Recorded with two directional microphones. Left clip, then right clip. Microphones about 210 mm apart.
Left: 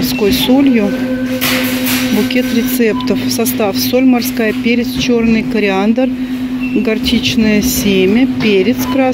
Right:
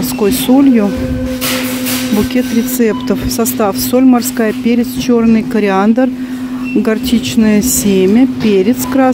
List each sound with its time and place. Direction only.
0.2 s speech: 15° right (ahead or behind)
3.6 s speech: 15° right (ahead or behind)